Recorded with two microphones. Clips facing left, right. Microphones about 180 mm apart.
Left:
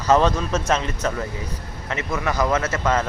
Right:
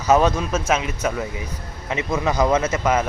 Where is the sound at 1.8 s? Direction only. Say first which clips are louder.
Right 3 dB; 20° right (ahead or behind).